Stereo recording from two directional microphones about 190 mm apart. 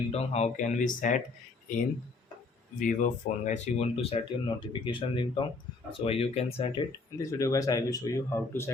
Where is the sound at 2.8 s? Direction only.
40° left (ahead or behind).